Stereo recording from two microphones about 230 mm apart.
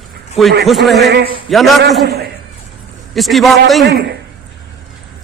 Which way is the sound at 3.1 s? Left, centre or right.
Centre.